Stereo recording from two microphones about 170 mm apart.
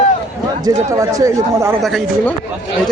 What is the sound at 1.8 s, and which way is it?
Speech, centre (ahead or behind).